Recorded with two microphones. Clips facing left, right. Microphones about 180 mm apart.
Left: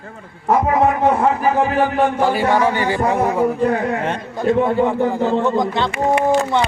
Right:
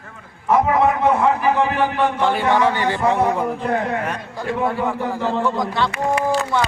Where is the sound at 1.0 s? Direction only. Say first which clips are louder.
Left 1 dB; 40° left (ahead or behind).